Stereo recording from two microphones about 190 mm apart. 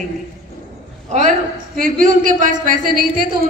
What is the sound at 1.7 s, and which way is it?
Speech, 45° right (ahead or behind).